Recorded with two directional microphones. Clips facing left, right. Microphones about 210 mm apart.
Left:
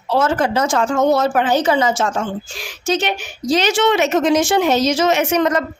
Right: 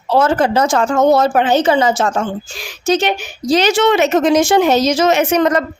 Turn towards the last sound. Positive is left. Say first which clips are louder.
# right 3 dB
turn(degrees=-35)  # may be behind; listen again after turning